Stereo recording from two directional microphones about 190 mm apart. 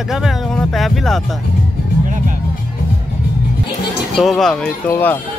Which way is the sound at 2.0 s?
40° right (ahead or behind).